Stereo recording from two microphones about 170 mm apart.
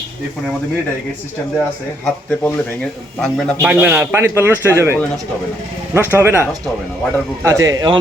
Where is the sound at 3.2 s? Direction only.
Centre (ahead or behind).